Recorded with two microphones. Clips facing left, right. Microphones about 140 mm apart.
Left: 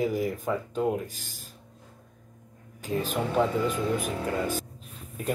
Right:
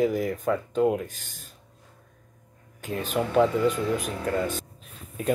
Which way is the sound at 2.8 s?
40° left (ahead or behind).